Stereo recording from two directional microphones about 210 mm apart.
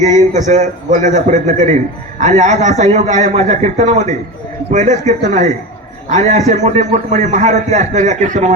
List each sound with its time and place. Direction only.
0.0 s a man's voice: 35° right (ahead or behind)